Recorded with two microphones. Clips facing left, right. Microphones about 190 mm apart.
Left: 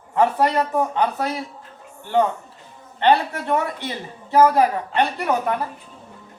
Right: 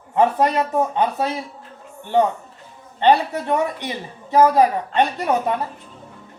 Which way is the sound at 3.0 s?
15° right (ahead or behind).